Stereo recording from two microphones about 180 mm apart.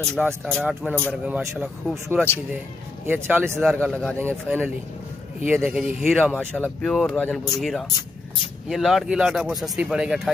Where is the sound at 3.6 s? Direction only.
Centre (ahead or behind).